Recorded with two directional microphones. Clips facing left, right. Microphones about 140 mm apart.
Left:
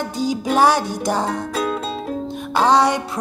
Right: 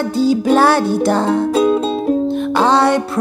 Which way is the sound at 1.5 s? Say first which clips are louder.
Right 9 dB; 25° right (ahead or behind).